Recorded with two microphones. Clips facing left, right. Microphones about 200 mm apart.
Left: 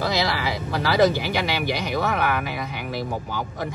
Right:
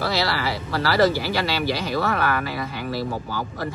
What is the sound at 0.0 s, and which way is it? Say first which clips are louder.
Speech: even; 15° left (ahead or behind).